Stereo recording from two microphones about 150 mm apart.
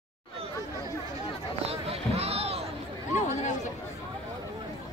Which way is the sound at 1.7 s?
40° right (ahead or behind).